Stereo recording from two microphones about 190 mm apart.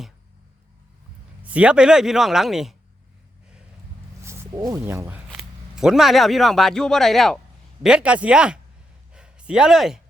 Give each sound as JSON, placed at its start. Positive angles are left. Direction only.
{"t": 1.5, "sound": "speech", "side_deg": -5}
{"t": 4.2, "sound": "speech", "side_deg": -15}